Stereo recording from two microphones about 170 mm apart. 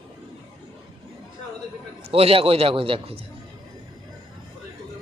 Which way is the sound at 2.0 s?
35° right (ahead or behind).